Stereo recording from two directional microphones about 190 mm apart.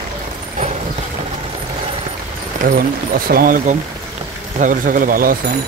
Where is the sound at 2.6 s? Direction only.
45° right (ahead or behind).